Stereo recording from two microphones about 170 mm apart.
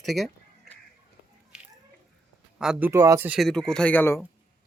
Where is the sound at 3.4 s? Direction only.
5° left (ahead or behind).